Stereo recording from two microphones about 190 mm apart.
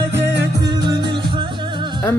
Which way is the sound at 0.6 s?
20° right (ahead or behind).